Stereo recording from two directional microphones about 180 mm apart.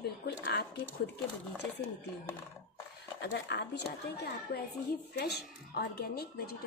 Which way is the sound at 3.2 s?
70° left (ahead or behind).